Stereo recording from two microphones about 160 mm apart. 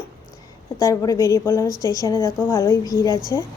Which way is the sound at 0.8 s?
20° left (ahead or behind).